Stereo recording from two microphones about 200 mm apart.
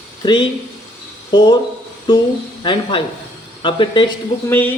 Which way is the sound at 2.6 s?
25° left (ahead or behind).